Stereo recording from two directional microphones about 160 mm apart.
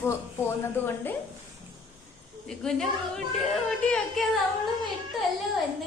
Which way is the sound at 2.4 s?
5° left (ahead or behind).